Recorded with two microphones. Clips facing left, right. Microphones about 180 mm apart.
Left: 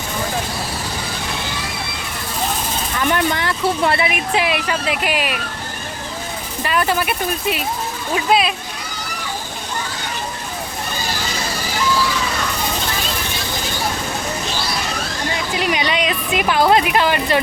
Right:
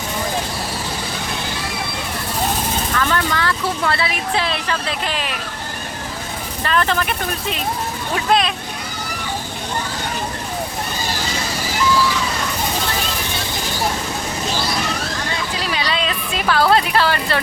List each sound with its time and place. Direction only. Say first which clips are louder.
3.0 s speech: left 3 dB; 20° left (ahead or behind)
6.7 s speech: even; 10° left (ahead or behind)
15.5 s a woman's voice: left 4 dB; 20° left (ahead or behind)